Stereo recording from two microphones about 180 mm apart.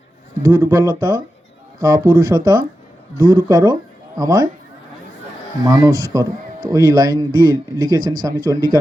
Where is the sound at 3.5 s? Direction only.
20° right (ahead or behind).